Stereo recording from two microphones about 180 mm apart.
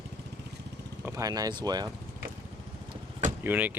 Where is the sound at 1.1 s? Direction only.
20° right (ahead or behind).